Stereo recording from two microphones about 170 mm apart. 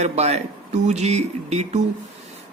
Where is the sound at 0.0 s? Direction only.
40° right (ahead or behind).